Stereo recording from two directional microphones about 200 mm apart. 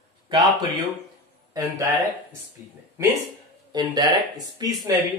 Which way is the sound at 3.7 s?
20° right (ahead or behind).